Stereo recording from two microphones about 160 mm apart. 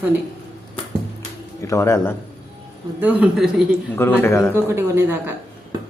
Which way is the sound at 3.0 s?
10° right (ahead or behind).